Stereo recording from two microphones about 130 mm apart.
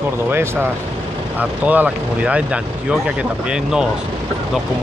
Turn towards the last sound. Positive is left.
turn(degrees=-5)  # may be behind; listen again after turning